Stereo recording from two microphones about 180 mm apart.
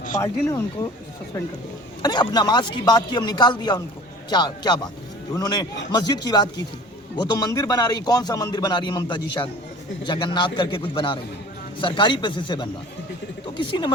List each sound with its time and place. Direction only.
0.2 s speech: 15° left (ahead or behind)
2.0 s a man's voice: 25° left (ahead or behind)